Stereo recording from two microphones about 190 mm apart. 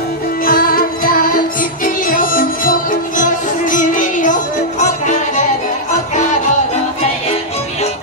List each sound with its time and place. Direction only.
0.5 s music: 50° left (ahead or behind)